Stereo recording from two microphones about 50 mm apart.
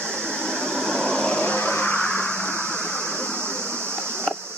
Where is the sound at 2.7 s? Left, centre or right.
Centre.